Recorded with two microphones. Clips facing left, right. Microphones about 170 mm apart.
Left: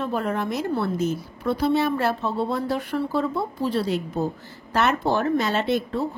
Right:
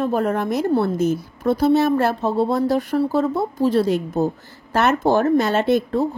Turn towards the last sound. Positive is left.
turn(degrees=-45)  # may be behind; listen again after turning